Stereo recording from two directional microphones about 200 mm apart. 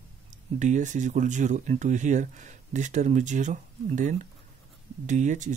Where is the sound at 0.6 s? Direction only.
35° right (ahead or behind).